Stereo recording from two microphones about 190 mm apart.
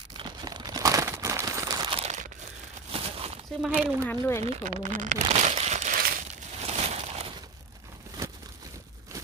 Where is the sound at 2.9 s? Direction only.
30° right (ahead or behind).